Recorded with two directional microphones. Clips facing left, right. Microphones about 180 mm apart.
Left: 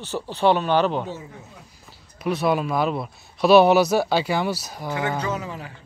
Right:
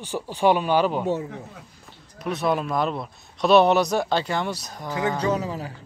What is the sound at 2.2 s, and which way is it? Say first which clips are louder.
Speech: left 2 dB; centre (ahead or behind).